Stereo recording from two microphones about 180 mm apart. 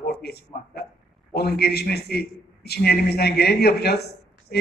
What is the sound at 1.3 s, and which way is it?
A man's voice, 60° left (ahead or behind).